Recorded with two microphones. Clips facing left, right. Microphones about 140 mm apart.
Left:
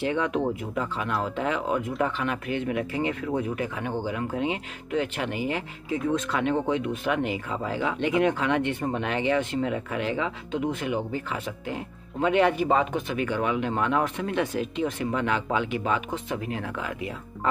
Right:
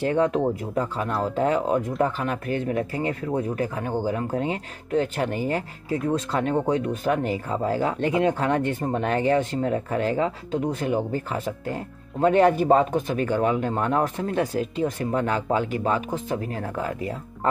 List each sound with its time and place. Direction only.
0.0 s speech: 40° right (ahead or behind)